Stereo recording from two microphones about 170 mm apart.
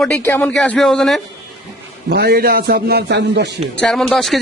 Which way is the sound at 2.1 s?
70° right (ahead or behind).